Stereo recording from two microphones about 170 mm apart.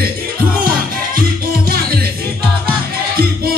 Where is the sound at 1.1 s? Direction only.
60° right (ahead or behind).